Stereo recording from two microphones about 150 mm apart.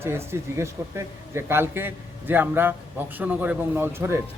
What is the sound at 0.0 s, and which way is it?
A man's voice, 15° right (ahead or behind).